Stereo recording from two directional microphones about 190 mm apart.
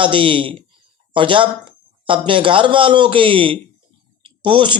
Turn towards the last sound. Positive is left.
turn(degrees=-25)  # may be behind; listen again after turning